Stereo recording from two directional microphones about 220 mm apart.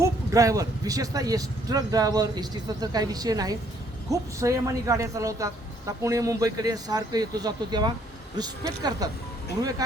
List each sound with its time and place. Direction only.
0.0 s a man's voice: 15° right (ahead or behind)